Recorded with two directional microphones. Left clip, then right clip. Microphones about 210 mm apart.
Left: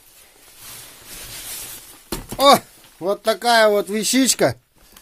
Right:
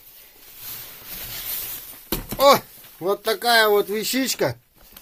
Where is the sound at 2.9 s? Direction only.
35° left (ahead or behind); by 4.5 s 55° left (ahead or behind).